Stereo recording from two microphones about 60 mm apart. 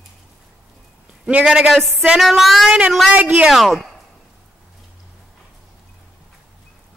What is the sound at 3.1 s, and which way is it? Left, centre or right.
Speech, right.